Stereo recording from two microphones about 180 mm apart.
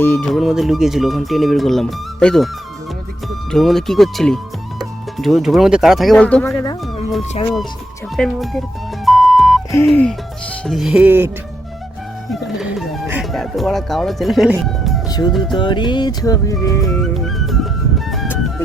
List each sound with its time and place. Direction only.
0.0 s speech: 10° left (ahead or behind)
3.5 s speech: centre (ahead or behind)
9.0 s music: centre (ahead or behind)
9.7 s speech: 10° left (ahead or behind)
10.7 s speech: centre (ahead or behind)
12.3 s speech: centre (ahead or behind)
15.5 s speech: 25° left (ahead or behind)
16.8 s music: centre (ahead or behind)